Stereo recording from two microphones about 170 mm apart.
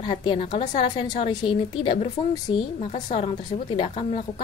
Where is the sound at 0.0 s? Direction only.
30° left (ahead or behind).